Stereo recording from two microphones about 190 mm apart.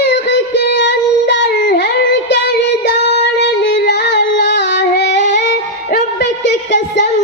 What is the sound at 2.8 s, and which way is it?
Female singing, 60° left (ahead or behind).